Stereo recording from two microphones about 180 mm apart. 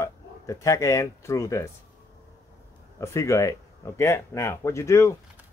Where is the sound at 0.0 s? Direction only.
15° left (ahead or behind).